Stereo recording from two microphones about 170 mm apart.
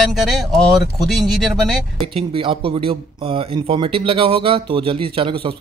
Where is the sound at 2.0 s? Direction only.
30° right (ahead or behind).